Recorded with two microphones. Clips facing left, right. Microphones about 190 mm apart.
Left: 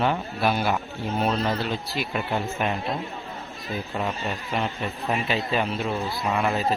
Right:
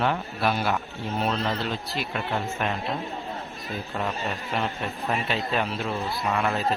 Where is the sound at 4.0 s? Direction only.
5° left (ahead or behind).